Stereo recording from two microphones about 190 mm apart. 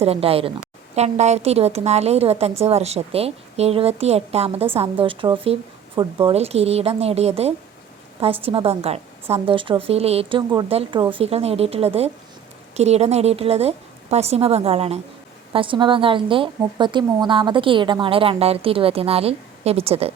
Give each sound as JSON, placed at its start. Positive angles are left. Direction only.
{"t": 0.0, "sound": "a woman's voice", "side_deg": -30}